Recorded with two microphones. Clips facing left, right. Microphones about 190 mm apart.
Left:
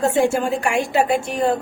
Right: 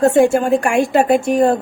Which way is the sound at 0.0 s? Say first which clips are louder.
Right 6 dB; 55° right (ahead or behind).